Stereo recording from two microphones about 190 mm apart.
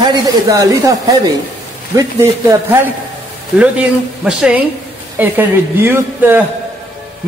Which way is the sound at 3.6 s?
5° right (ahead or behind).